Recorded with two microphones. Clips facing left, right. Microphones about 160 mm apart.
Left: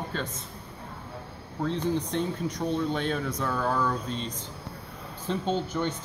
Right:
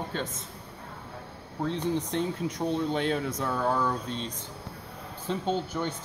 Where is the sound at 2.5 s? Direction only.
25° right (ahead or behind).